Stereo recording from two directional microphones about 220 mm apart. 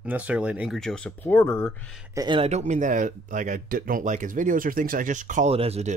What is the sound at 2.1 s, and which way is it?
Speech, 20° right (ahead or behind).